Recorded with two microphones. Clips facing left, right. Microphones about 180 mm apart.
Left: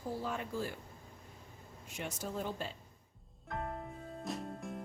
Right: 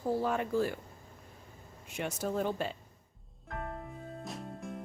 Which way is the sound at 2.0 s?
65° right (ahead or behind).